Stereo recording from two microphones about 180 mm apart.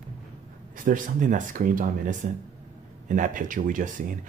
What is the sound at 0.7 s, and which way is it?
Speech, 50° right (ahead or behind).